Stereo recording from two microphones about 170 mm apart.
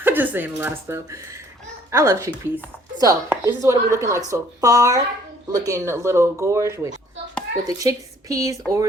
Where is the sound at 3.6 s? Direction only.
20° right (ahead or behind).